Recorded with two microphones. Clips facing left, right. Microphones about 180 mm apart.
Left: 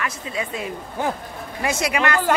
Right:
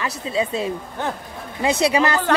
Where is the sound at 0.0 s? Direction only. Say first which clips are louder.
Right 4 dB; 30° right (ahead or behind).